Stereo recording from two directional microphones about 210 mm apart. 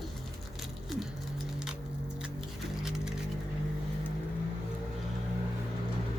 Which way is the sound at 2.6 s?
5° right (ahead or behind).